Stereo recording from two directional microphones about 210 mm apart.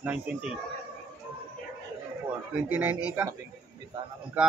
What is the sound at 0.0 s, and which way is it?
Speech, 5° right (ahead or behind).